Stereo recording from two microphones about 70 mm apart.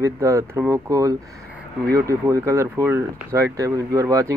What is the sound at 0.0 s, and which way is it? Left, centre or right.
Speech, right.